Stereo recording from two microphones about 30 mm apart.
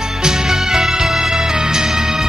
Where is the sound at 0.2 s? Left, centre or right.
Right.